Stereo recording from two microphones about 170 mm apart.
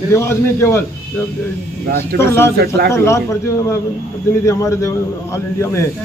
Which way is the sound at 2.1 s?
15° left (ahead or behind).